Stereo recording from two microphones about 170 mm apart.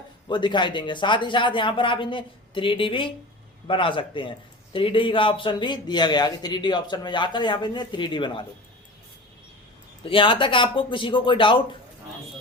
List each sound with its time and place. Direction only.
0.3 s a man's voice: 25° left (ahead or behind)
10.0 s a man's voice: 30° left (ahead or behind)